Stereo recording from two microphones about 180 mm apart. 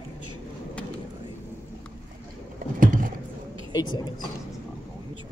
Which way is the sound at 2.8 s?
50° right (ahead or behind).